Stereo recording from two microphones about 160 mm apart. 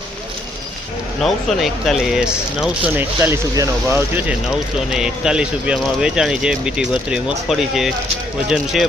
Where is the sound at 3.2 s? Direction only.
20° right (ahead or behind).